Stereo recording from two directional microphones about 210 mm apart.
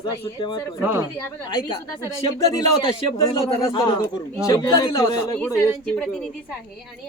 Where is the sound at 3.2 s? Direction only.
25° left (ahead or behind).